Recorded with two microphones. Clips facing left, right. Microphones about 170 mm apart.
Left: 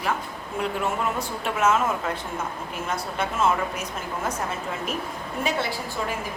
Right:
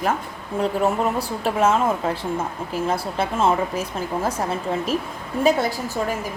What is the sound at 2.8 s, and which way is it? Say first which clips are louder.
Speech: right 4 dB; 30° right (ahead or behind).